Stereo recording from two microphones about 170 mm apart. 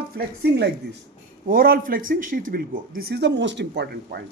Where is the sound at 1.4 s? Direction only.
55° right (ahead or behind).